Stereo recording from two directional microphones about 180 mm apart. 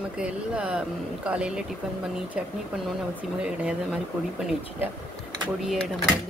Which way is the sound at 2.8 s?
5° right (ahead or behind).